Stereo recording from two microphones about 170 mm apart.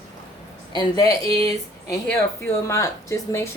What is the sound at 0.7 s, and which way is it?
Speech, 25° left (ahead or behind).